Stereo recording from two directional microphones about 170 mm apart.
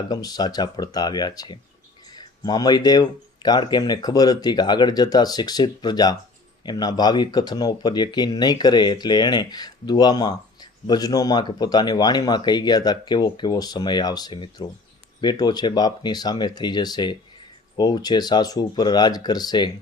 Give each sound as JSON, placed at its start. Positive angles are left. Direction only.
{"t": 0.1, "sound": "speech", "side_deg": 25}